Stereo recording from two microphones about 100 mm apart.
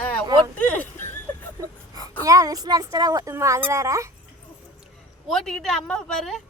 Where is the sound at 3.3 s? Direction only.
25° right (ahead or behind).